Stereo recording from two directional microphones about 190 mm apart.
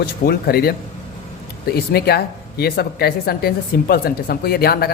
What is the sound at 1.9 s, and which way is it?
A woman's voice, 55° left (ahead or behind).